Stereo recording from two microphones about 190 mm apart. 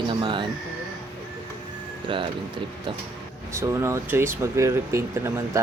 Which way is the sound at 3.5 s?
15° right (ahead or behind).